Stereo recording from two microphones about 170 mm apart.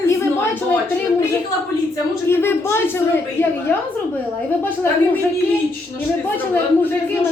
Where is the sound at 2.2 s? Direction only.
15° left (ahead or behind).